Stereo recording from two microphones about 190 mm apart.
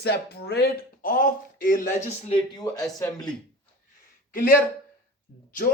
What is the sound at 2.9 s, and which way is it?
Speech, 20° left (ahead or behind).